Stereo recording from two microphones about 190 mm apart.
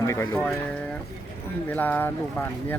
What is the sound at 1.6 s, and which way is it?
Speech, 10° left (ahead or behind).